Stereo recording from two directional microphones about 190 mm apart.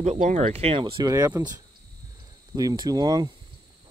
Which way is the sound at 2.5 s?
20° right (ahead or behind).